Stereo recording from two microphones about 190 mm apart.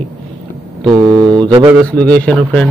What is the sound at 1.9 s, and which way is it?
Speech, 5° left (ahead or behind).